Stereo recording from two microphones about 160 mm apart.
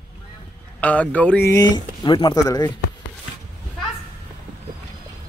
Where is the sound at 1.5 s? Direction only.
25° left (ahead or behind).